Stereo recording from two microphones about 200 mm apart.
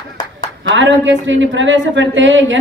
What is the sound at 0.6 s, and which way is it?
A woman's voice, 65° right (ahead or behind).